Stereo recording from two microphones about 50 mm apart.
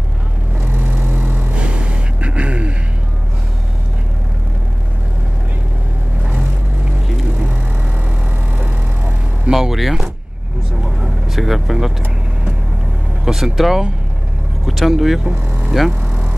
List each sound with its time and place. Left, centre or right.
0.6 s vehicle: right
1.5 s vehicle: right
9.5 s a sound: centre
11.3 s speech: centre
13.2 s speech: centre
14.9 s speech: centre